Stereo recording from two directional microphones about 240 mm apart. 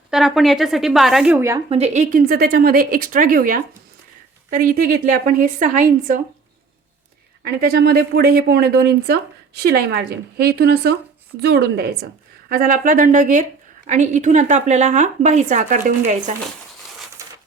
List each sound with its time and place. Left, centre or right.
0.1 s a woman's voice: centre
1.7 s a woman's voice: right
7.4 s a woman's voice: right